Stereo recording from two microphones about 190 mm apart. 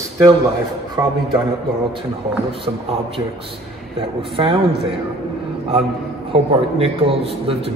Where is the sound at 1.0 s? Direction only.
15° right (ahead or behind).